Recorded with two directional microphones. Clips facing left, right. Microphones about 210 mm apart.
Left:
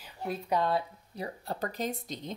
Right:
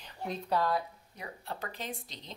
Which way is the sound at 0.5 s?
25° left (ahead or behind).